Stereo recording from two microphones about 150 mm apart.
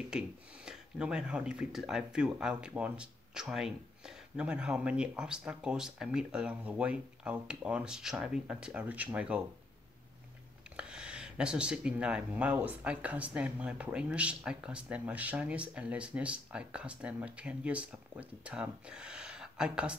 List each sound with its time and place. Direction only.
0.7 s speech: 5° right (ahead or behind)
10.8 s speech: 5° right (ahead or behind)